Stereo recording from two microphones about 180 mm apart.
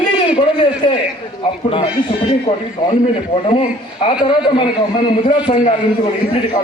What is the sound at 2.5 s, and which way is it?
Speech, 35° left (ahead or behind).